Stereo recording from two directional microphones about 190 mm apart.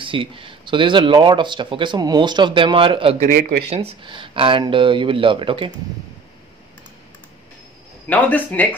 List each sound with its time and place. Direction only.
0.0 s speech: 25° right (ahead or behind)
3.3 s speech: 50° right (ahead or behind)
3.7 s speech: 30° right (ahead or behind)
8.1 s speech: 10° left (ahead or behind)